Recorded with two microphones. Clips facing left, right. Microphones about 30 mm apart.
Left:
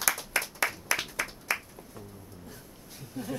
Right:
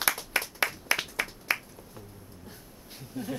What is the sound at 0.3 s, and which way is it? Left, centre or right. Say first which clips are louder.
Clapping: even; right.